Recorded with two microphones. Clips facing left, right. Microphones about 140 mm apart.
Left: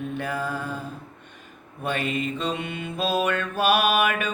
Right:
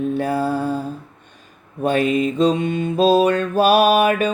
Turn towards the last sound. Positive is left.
turn(degrees=-35)  # may be behind; listen again after turning